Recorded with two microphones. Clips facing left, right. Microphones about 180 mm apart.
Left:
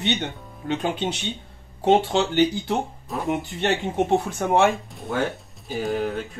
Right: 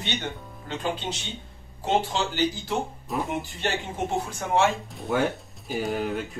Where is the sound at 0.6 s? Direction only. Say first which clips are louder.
Left 5 dB; 65° left (ahead or behind).